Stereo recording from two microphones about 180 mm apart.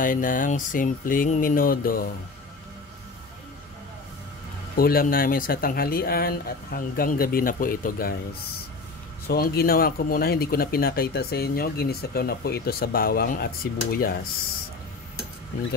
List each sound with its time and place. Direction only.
0.0 s speech: 50° left (ahead or behind)
4.7 s speech: 55° left (ahead or behind)
9.3 s speech: 60° left (ahead or behind)